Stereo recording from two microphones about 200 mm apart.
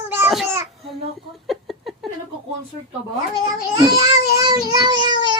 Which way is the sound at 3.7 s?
20° right (ahead or behind).